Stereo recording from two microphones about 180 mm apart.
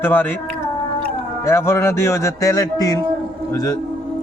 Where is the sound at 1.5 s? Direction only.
15° left (ahead or behind).